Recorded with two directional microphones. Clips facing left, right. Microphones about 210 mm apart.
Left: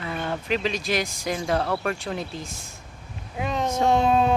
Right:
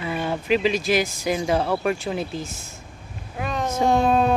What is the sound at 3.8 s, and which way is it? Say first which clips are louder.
Child singing: right 2 dB; 25° left (ahead or behind).